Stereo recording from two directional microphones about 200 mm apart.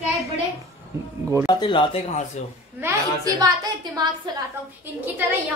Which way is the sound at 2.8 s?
15° right (ahead or behind).